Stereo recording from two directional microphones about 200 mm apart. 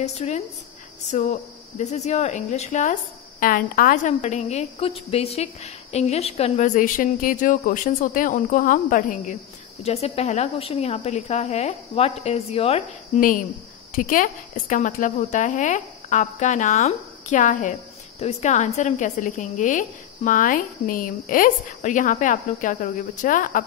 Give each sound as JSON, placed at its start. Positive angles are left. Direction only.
{"t": 0.0, "sound": "speech", "side_deg": 35}